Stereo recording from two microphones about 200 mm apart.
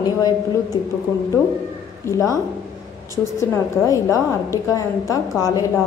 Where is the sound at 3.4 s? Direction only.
15° left (ahead or behind).